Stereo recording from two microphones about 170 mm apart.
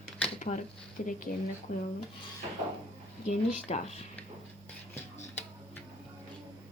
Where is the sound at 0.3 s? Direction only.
45° left (ahead or behind).